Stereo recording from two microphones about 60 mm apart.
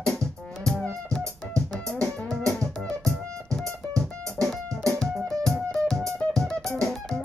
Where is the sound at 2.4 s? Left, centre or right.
Right.